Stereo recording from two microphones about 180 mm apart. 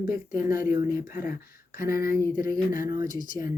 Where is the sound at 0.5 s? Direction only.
50° left (ahead or behind).